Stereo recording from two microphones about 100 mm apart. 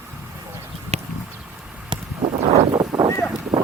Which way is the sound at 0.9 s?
90° right.